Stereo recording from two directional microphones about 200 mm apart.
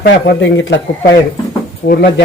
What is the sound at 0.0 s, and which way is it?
Speech, 60° left (ahead or behind).